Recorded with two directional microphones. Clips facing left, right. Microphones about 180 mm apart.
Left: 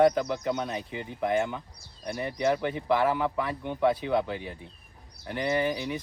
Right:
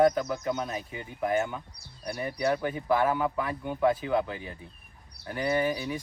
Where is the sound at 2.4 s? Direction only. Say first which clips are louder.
Left 1 dB; 25° left (ahead or behind).